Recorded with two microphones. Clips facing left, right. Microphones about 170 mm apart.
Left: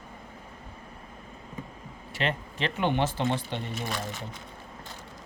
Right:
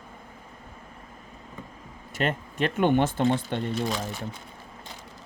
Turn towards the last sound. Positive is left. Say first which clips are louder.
# right 5 dB
turn(degrees=-50)  # may be behind; listen again after turning